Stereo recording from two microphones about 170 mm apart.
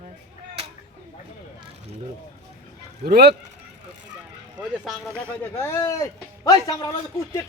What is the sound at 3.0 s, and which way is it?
Speech, 75° right (ahead or behind).